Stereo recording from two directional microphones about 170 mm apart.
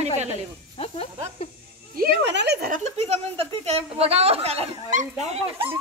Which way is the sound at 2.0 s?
70° right (ahead or behind).